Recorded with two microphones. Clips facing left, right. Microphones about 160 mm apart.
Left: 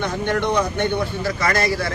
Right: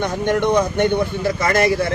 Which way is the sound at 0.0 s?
15° right (ahead or behind).